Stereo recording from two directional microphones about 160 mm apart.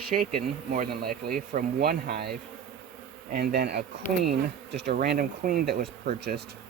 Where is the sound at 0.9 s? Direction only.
70° right (ahead or behind).